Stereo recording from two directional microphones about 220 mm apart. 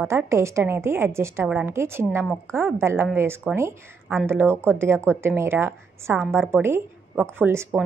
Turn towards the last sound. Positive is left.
turn(degrees=-10)  # may be behind; listen again after turning